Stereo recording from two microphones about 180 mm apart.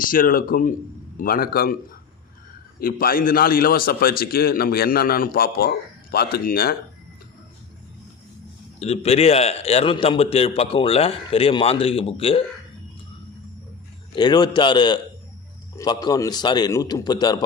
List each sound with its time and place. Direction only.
0.0 s a man's voice: 50° left (ahead or behind)
8.8 s a man's voice: 35° left (ahead or behind)
14.2 s a man's voice: 25° left (ahead or behind)